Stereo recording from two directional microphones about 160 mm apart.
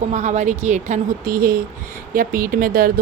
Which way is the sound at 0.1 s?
50° right (ahead or behind).